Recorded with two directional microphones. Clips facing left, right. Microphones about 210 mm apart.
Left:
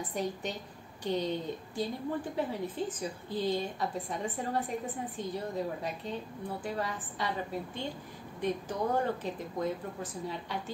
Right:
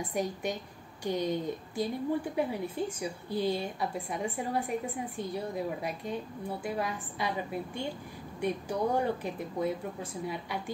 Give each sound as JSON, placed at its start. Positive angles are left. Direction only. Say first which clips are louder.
{"t": 0.1, "sound": "a woman's voice", "louder": "right 3 dB", "side_deg": -10}